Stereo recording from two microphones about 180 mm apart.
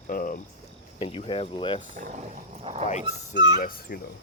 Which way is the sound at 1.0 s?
30° left (ahead or behind).